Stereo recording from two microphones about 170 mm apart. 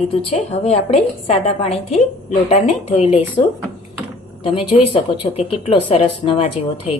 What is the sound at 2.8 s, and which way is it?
Speech, 40° left (ahead or behind).